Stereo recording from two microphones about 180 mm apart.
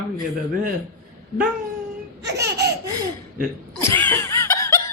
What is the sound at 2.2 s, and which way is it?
Speech, 65° right (ahead or behind).